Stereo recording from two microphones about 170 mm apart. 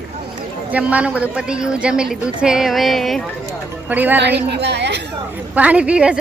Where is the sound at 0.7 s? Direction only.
10° right (ahead or behind).